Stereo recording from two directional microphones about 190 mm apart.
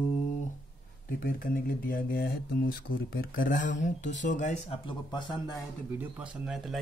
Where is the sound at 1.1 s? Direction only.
50° left (ahead or behind).